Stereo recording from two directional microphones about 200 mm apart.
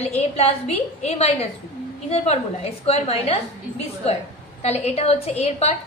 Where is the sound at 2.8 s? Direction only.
30° left (ahead or behind).